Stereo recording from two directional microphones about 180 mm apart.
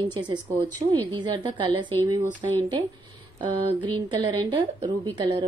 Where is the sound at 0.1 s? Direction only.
25° right (ahead or behind).